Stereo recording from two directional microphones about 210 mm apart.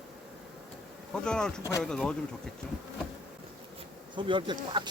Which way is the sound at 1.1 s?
5° left (ahead or behind).